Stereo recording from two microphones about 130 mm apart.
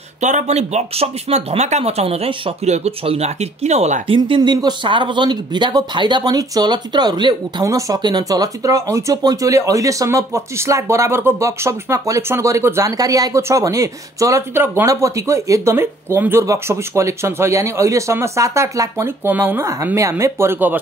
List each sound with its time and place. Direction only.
0.2 s speech: 65° right (ahead or behind)
4.4 s speech: 30° right (ahead or behind); by 20.8 s 15° right (ahead or behind)